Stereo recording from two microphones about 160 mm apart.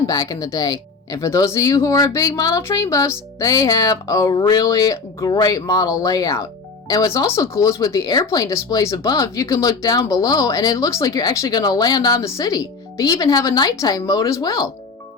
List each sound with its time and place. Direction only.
0.1 s speech: 25° left (ahead or behind)